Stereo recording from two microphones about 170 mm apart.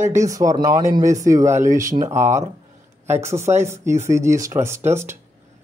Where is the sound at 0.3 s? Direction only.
20° right (ahead or behind).